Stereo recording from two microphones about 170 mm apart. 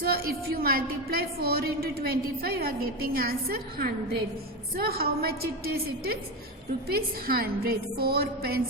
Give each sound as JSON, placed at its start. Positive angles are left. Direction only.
{"t": 0.0, "sound": "a woman's voice", "side_deg": -60}